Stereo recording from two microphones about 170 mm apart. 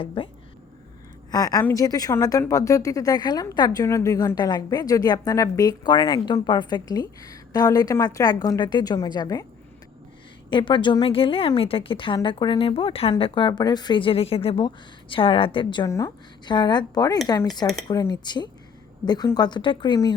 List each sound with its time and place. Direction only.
0.0 s a woman's voice: 30° left (ahead or behind)
1.3 s speech: 20° left (ahead or behind)
10.5 s a woman's voice: 30° left (ahead or behind)